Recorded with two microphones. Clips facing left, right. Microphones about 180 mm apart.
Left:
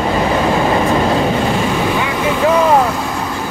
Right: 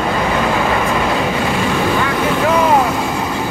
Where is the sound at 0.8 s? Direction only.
30° left (ahead or behind).